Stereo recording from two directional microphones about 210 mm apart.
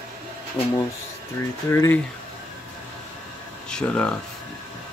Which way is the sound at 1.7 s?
15° left (ahead or behind).